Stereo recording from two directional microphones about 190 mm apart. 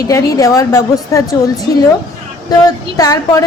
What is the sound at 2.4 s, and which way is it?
Speech, 20° left (ahead or behind).